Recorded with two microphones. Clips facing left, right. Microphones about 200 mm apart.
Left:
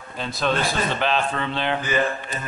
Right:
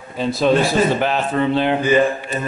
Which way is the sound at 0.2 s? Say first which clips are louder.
Right 8 dB; centre (ahead or behind).